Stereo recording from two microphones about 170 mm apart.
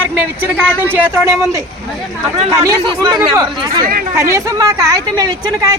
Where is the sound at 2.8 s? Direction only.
30° right (ahead or behind).